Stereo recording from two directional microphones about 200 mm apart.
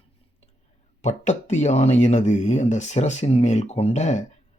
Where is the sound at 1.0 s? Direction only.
35° left (ahead or behind).